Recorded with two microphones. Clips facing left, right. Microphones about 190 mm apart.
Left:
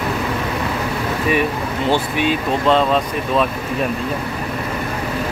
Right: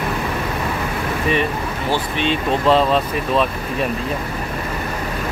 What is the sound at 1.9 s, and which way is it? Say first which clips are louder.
Speech: left 2 dB; 10° left (ahead or behind).